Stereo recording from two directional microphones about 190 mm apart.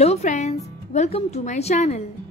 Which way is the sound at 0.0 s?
35° left (ahead or behind).